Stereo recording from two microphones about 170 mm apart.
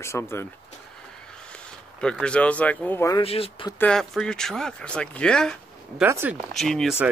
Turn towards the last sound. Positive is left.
turn(degrees=0)  # may be behind; listen again after turning